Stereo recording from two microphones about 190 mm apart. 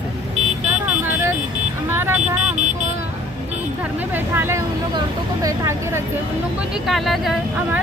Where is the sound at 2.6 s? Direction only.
40° right (ahead or behind).